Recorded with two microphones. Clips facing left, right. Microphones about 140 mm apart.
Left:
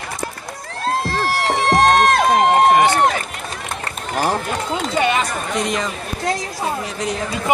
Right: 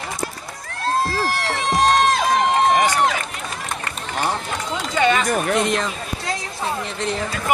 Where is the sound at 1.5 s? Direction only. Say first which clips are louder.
Left 4 dB; 60° left (ahead or behind).